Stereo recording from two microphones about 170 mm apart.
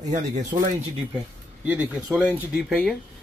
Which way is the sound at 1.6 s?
10° right (ahead or behind).